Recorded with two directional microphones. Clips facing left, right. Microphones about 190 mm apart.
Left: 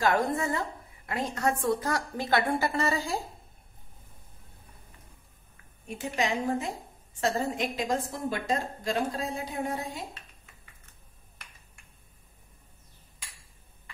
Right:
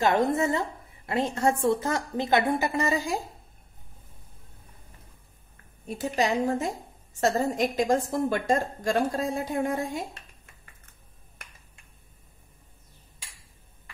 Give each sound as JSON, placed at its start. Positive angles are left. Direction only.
{"t": 0.0, "sound": "a woman's voice", "side_deg": -20}
{"t": 5.9, "sound": "a woman's voice", "side_deg": -35}